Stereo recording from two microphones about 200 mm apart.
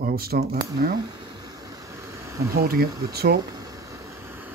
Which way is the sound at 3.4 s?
15° right (ahead or behind).